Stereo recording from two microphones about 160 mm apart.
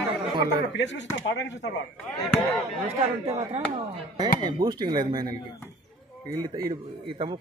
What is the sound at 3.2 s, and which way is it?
Speech, 40° right (ahead or behind).